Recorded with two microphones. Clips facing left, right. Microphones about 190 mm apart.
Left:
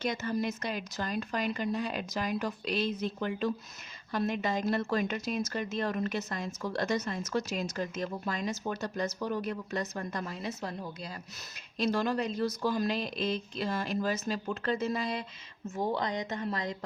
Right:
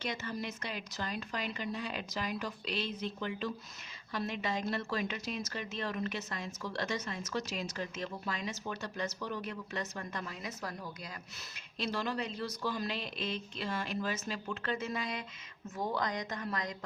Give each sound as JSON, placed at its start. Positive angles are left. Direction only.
{"t": 0.0, "sound": "speech", "side_deg": 45}
{"t": 10.6, "sound": "a woman's voice", "side_deg": 25}
{"t": 11.8, "sound": "a woman's voice", "side_deg": 45}